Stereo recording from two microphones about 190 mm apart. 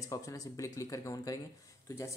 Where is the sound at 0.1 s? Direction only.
15° left (ahead or behind).